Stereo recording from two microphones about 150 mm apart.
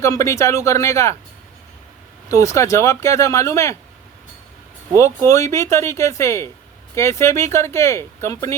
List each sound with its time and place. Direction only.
0.0 s speech: 20° left (ahead or behind)
2.3 s speech: 20° left (ahead or behind)
4.9 s speech: 20° left (ahead or behind)